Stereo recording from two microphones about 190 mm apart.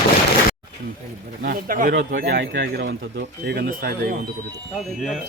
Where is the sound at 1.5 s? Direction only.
50° right (ahead or behind).